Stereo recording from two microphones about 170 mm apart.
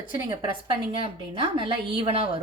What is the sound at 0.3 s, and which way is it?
A woman's voice, 30° right (ahead or behind).